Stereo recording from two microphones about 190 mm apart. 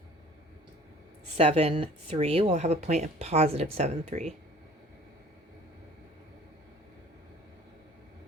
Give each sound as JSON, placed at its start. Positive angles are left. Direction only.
{"t": 1.4, "sound": "speech", "side_deg": -30}